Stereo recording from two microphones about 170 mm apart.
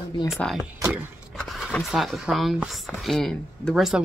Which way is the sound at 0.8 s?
10° right (ahead or behind).